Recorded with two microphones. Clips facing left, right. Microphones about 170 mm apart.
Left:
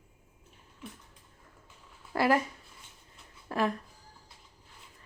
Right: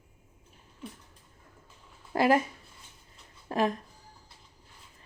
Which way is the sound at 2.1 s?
20° right (ahead or behind).